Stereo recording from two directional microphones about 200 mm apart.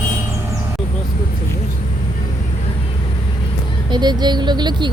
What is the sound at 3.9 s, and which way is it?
Speech, 20° right (ahead or behind).